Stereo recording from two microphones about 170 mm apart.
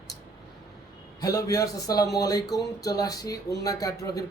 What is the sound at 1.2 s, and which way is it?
Speech, 20° left (ahead or behind).